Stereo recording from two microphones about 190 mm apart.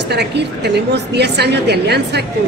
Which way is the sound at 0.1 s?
60° right (ahead or behind).